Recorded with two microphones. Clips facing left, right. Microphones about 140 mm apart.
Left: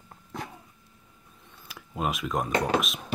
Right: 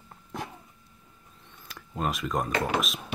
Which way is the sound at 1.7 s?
5° left (ahead or behind).